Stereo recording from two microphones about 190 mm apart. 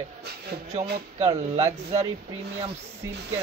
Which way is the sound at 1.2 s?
35° right (ahead or behind).